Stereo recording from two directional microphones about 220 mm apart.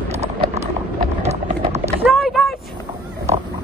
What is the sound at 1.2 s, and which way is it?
Clip-clop, 30° right (ahead or behind).